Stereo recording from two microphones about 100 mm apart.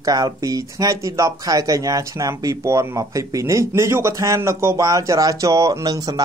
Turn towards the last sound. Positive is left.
turn(degrees=-35)  # may be behind; listen again after turning